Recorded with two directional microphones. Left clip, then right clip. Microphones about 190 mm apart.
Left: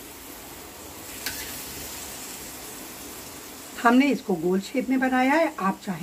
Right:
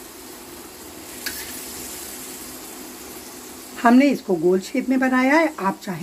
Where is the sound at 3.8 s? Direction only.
30° right (ahead or behind).